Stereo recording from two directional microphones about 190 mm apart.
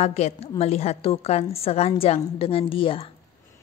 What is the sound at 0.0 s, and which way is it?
A woman's voice, 35° left (ahead or behind).